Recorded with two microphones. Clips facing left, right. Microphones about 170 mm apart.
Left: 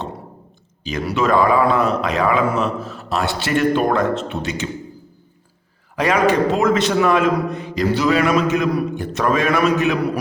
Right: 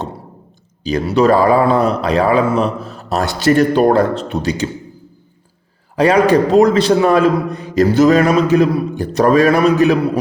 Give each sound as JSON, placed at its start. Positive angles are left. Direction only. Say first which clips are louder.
{"t": 0.9, "sound": "a man's voice", "louder": "right 6 dB", "side_deg": -35}
{"t": 6.0, "sound": "a man's voice", "louder": "right 5 dB", "side_deg": -35}